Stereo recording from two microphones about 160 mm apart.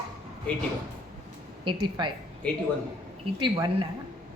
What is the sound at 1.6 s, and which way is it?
Speech, 30° right (ahead or behind).